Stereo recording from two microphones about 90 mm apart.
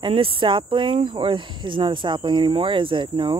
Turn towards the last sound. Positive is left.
turn(degrees=-65)  # may be behind; listen again after turning